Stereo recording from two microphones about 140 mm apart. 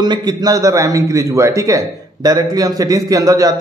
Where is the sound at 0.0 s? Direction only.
30° right (ahead or behind).